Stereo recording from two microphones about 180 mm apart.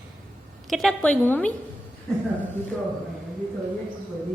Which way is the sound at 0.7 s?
Centre (ahead or behind).